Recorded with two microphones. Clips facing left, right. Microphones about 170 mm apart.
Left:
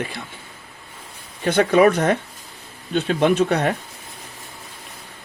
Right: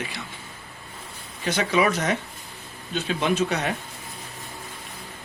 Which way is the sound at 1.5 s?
55° left (ahead or behind).